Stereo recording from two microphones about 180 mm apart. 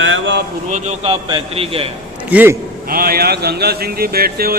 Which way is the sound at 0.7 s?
35° right (ahead or behind).